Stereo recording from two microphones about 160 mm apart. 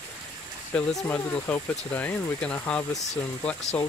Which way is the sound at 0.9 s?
15° left (ahead or behind).